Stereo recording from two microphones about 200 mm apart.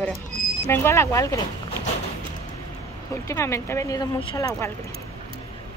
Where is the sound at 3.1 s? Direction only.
15° left (ahead or behind).